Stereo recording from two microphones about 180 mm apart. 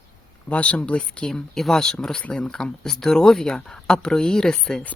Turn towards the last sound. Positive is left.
turn(degrees=5)  # may be behind; listen again after turning